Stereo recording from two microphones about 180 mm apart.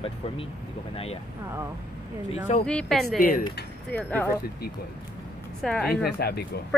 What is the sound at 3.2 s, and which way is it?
Speech, 50° left (ahead or behind).